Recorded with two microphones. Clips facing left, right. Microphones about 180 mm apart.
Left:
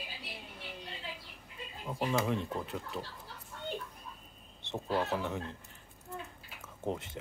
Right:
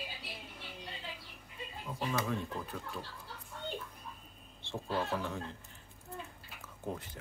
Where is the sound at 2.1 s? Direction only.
20° left (ahead or behind).